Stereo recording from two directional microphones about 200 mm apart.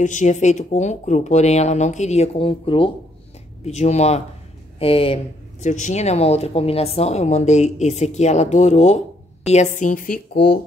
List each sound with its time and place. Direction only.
0.0 s a woman's voice: 40° left (ahead or behind)